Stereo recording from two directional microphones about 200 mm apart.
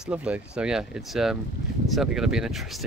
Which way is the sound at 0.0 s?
5° right (ahead or behind).